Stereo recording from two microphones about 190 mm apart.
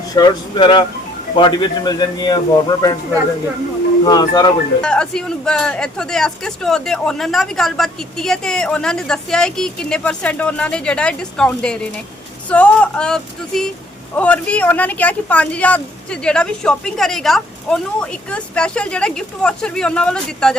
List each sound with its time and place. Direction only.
0.1 s a man's voice: 20° left (ahead or behind)
4.0 s a man's voice: 20° left (ahead or behind)
4.8 s speech: 5° left (ahead or behind)